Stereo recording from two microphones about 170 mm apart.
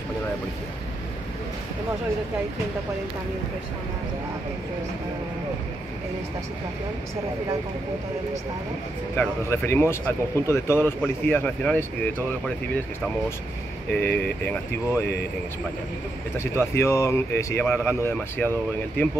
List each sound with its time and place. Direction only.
9.1 s speech: 10° left (ahead or behind)
13.9 s speech: 10° left (ahead or behind)
16.3 s speech: 15° left (ahead or behind)